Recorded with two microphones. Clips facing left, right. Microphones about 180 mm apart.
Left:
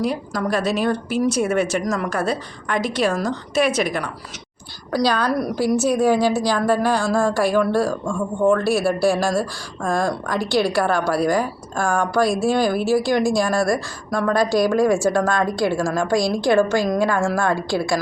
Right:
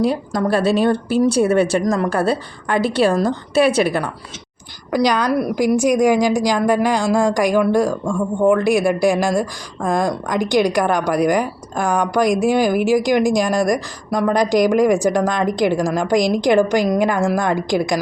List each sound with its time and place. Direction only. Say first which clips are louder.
0.0 s a woman's voice: right 4 dB; 30° right (ahead or behind)
4.9 s a woman's voice: right 3 dB; 15° right (ahead or behind)